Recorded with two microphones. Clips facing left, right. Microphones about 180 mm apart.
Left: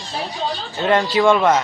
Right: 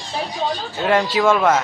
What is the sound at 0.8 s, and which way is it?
Speech, 5° right (ahead or behind).